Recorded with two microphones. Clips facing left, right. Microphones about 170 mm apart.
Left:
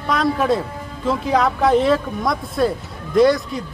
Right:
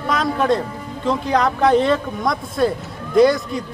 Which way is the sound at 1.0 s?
Centre (ahead or behind).